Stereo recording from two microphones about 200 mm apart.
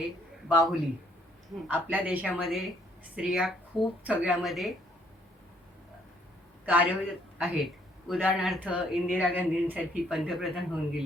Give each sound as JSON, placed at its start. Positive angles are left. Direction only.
{"t": 0.4, "sound": "a man's voice", "side_deg": 0}
{"t": 6.7, "sound": "a man's voice", "side_deg": -5}